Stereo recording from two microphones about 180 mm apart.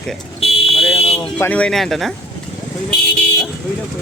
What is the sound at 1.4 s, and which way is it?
Speech, 10° left (ahead or behind).